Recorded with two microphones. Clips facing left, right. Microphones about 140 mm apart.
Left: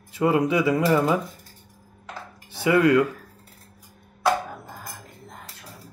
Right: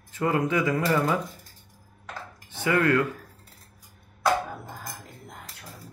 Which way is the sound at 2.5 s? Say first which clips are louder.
Left 5 dB; 10° left (ahead or behind).